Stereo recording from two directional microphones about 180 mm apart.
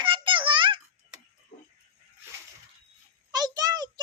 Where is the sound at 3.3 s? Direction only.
20° right (ahead or behind).